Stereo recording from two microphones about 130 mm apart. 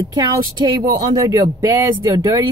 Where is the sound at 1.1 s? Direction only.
30° right (ahead or behind).